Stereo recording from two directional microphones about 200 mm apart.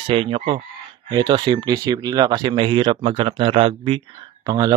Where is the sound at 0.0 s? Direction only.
25° right (ahead or behind).